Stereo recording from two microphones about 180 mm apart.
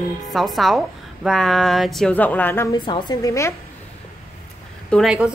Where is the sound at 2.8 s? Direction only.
25° left (ahead or behind).